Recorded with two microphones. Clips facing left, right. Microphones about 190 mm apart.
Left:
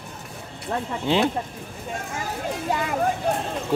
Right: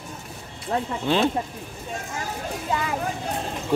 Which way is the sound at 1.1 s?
15° left (ahead or behind).